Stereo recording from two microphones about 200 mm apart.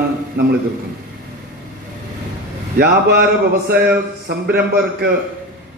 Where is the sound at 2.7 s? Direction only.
50° right (ahead or behind).